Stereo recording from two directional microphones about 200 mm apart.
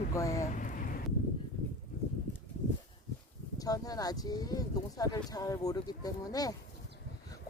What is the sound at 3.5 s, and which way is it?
Speech, 20° left (ahead or behind).